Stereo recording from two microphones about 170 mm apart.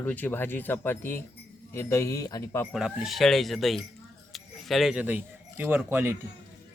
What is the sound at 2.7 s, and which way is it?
A man's voice, 5° right (ahead or behind).